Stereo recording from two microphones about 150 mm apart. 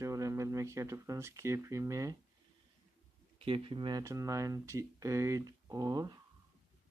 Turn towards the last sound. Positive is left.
turn(degrees=-25)  # may be behind; listen again after turning